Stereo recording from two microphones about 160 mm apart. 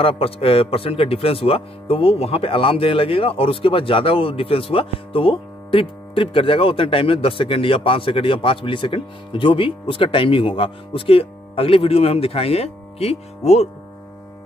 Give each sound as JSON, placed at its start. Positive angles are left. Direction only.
{"t": 0.0, "sound": "speech", "side_deg": 35}